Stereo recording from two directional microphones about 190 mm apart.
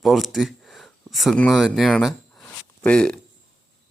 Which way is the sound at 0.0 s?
Centre (ahead or behind).